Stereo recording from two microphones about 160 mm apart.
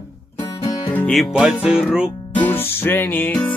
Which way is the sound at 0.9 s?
10° left (ahead or behind).